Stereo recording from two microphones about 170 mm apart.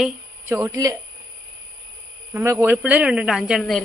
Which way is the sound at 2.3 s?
15° right (ahead or behind).